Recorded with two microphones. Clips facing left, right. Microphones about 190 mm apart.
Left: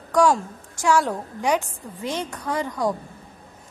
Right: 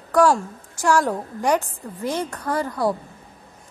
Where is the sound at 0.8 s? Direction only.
10° left (ahead or behind).